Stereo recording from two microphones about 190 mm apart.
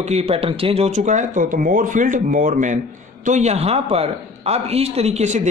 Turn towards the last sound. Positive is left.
turn(degrees=-35)  # may be behind; listen again after turning